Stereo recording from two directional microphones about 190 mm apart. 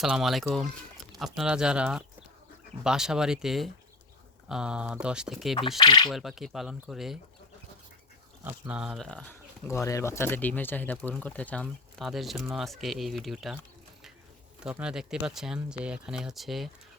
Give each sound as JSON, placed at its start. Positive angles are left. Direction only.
{"t": 0.0, "sound": "speech", "side_deg": 0}
{"t": 5.8, "sound": "speech", "side_deg": 25}
{"t": 6.1, "sound": "speech", "side_deg": 0}
{"t": 8.6, "sound": "speech", "side_deg": -5}
{"t": 14.6, "sound": "speech", "side_deg": -5}